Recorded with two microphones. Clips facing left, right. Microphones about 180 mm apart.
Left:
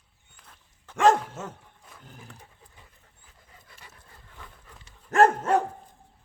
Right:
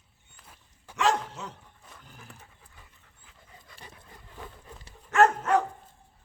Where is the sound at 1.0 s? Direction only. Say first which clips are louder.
Left 6 dB; 50° left (ahead or behind).